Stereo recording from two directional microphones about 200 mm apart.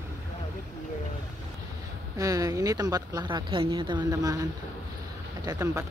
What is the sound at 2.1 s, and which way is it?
Speech, 20° right (ahead or behind).